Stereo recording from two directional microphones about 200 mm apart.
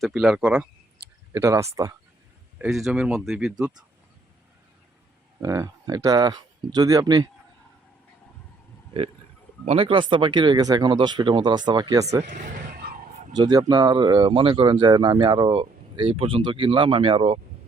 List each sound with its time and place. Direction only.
0.0 s speech: centre (ahead or behind)
2.6 s speech: centre (ahead or behind)
5.4 s speech: 15° right (ahead or behind)
9.6 s speech: 25° right (ahead or behind)
12.2 s wild animals: 45° right (ahead or behind)
13.3 s speech: 20° right (ahead or behind)